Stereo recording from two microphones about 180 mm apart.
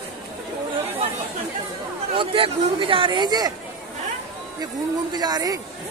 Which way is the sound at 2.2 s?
30° right (ahead or behind).